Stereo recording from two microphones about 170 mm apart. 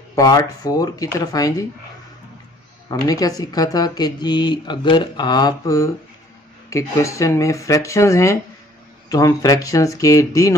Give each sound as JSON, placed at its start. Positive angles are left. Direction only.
{"t": 0.1, "sound": "speech", "side_deg": 20}
{"t": 2.9, "sound": "speech", "side_deg": 20}